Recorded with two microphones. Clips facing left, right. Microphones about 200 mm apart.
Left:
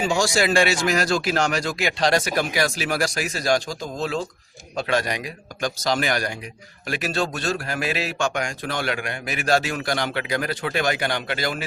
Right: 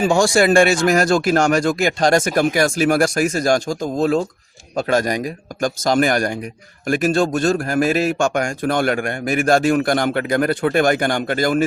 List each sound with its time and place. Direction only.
0.0 s speech: 50° right (ahead or behind)